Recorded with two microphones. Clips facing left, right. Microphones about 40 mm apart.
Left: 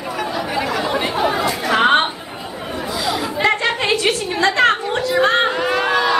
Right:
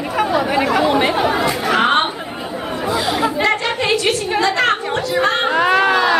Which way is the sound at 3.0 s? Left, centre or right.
Right.